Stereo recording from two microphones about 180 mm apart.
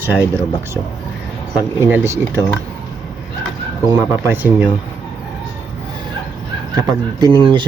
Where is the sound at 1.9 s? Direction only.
15° right (ahead or behind).